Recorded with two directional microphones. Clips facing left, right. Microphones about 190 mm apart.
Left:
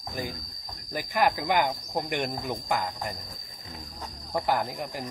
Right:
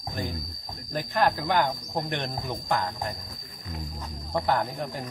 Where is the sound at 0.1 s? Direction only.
Centre (ahead or behind).